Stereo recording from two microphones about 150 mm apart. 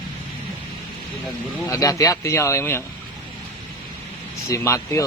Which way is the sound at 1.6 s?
25° left (ahead or behind).